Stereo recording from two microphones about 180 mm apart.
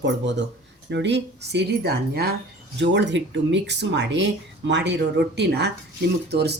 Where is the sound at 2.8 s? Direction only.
75° right (ahead or behind).